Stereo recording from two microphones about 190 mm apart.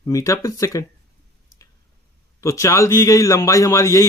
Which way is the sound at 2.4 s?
15° left (ahead or behind).